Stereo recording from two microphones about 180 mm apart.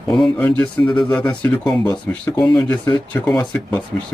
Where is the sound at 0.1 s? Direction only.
5° left (ahead or behind).